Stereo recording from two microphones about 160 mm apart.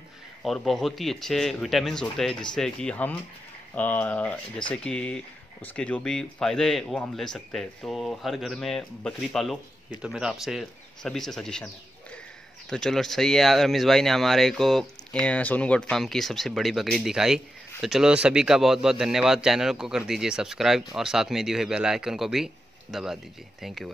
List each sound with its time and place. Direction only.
0.4 s speech: centre (ahead or behind)